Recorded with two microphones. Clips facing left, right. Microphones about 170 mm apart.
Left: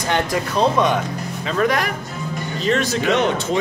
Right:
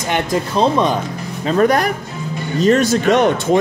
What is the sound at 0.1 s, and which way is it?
Speech, 25° right (ahead or behind).